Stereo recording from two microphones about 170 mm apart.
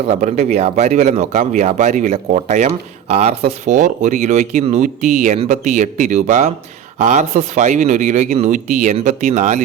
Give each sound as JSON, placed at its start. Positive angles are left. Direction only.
{"t": 0.0, "sound": "speech", "side_deg": -40}